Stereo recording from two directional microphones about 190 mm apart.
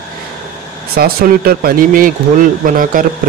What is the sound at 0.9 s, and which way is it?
Speech, 50° right (ahead or behind).